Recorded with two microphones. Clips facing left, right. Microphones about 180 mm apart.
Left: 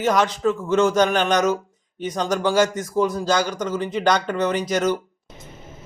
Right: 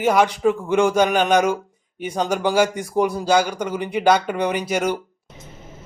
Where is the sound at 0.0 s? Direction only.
10° right (ahead or behind).